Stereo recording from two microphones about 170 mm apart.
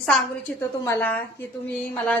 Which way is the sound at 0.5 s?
10° left (ahead or behind).